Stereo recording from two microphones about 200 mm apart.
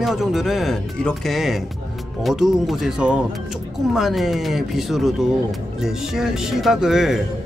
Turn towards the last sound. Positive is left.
turn(degrees=0)  # may be behind; listen again after turning